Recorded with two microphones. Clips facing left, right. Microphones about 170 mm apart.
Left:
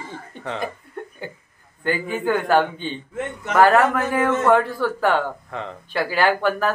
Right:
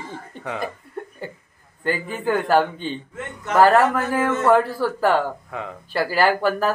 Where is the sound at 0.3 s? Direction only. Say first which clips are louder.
Left 1 dB; 5° right (ahead or behind).